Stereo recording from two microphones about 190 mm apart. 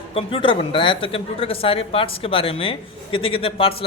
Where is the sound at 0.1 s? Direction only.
30° left (ahead or behind).